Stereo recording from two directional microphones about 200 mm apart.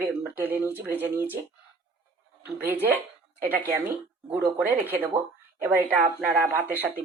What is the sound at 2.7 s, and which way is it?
Speech, 10° right (ahead or behind).